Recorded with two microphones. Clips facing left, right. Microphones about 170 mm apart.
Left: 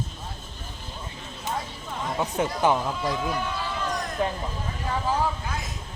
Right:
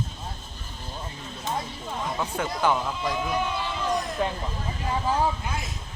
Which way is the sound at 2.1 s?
20° left (ahead or behind).